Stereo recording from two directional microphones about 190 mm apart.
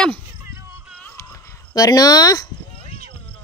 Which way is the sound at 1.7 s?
20° left (ahead or behind).